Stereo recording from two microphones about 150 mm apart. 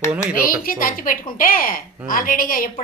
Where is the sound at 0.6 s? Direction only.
65° left (ahead or behind).